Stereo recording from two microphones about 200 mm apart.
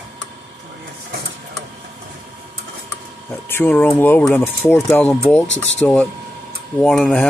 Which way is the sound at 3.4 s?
10° left (ahead or behind).